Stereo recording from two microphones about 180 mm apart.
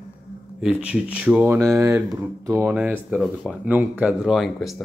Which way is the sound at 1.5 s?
15° right (ahead or behind).